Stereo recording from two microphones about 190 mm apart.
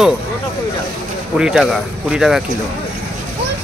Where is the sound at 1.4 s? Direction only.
Centre (ahead or behind).